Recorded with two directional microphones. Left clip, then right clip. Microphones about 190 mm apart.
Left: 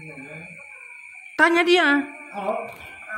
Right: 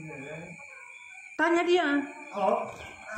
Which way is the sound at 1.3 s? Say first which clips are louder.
Left 7 dB; 35° left (ahead or behind).